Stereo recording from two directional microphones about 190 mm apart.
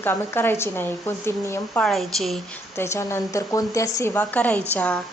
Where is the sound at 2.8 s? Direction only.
15° left (ahead or behind).